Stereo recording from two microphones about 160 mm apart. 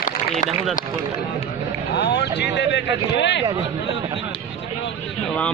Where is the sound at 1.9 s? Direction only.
90° left.